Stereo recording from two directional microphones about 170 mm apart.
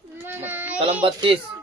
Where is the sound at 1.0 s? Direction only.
30° right (ahead or behind).